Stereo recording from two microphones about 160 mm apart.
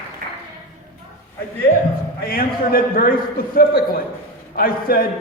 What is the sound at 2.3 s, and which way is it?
A man's voice, 65° left (ahead or behind).